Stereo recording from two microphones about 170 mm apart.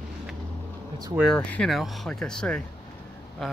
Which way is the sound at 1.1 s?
Centre (ahead or behind).